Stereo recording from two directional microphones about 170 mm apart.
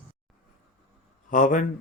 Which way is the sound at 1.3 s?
50° left (ahead or behind).